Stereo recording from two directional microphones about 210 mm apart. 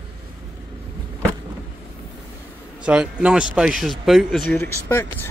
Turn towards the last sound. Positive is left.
turn(degrees=10)  # may be behind; listen again after turning